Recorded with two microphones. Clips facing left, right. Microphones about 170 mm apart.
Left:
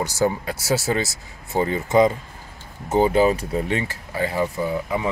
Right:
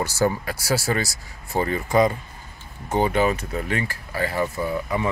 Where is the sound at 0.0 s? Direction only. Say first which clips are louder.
Left 1 dB; 15° left (ahead or behind).